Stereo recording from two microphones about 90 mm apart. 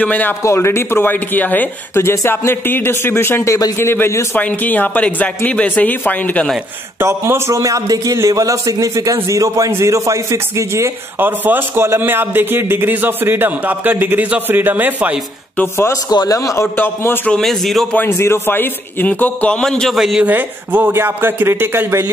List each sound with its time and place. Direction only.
0.0 s a man's voice: 15° left (ahead or behind)
0.4 s speech: 30° left (ahead or behind)
3.4 s a man's voice: 40° left (ahead or behind)
3.7 s speech: 25° left (ahead or behind)
4.4 s a man's voice: 20° left (ahead or behind)
7.0 s a man's voice: 30° right (ahead or behind)
15.5 s speech: 25° left (ahead or behind)
15.9 s a man's voice: 45° left (ahead or behind)
16.7 s speech: 25° left (ahead or behind)
17.3 s a man's voice: centre (ahead or behind)
17.9 s a man's voice: 25° left (ahead or behind); by 20.2 s 5° right (ahead or behind)
20.2 s a man's voice: 20° right (ahead or behind)